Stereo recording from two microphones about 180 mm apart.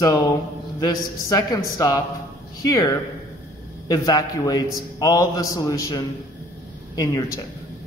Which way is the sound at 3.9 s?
20° left (ahead or behind).